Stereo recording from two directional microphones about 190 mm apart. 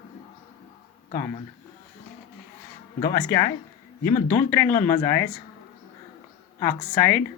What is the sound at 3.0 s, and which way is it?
Speech, 15° left (ahead or behind).